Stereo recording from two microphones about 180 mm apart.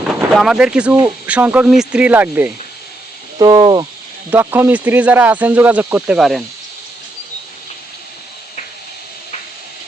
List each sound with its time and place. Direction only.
0.3 s speech: 5° right (ahead or behind)
3.3 s speech: 20° right (ahead or behind)
4.3 s speech: 10° right (ahead or behind)